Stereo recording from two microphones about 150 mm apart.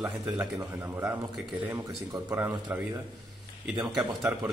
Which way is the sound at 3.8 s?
5° right (ahead or behind).